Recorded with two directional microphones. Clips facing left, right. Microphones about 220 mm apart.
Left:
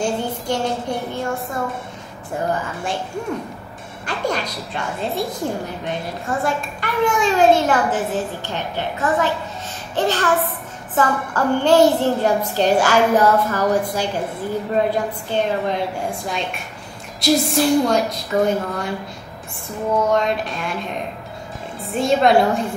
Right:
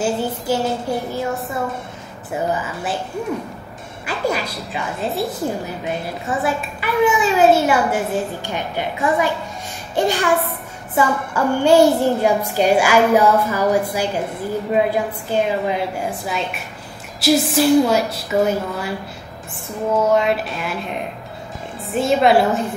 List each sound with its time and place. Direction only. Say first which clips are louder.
0.0 s a woman's voice: right 1 dB; 5° right (ahead or behind)
4.0 s a child's voice: right 1 dB; 5° right (ahead or behind)
15.3 s a woman's voice: right 1 dB; 5° right (ahead or behind)
20.1 s a woman's voice: right 2 dB; 5° right (ahead or behind)
21.9 s a woman's voice: right 1 dB; 5° right (ahead or behind)